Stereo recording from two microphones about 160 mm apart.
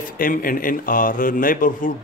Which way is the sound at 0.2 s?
60° left (ahead or behind).